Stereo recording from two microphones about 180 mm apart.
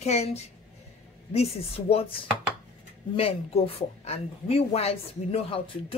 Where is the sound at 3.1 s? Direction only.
35° left (ahead or behind).